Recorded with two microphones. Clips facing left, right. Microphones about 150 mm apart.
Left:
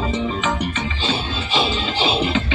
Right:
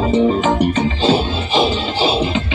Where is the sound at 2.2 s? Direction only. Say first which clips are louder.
Right 1 dB; 15° right (ahead or behind).